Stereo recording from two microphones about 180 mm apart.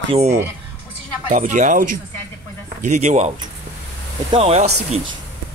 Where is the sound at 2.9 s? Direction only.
40° right (ahead or behind).